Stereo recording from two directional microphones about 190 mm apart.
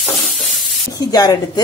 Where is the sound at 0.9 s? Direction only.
20° left (ahead or behind).